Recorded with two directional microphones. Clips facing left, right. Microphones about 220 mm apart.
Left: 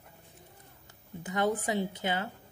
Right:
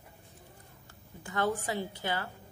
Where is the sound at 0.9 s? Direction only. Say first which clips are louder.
Left 6 dB; 20° left (ahead or behind).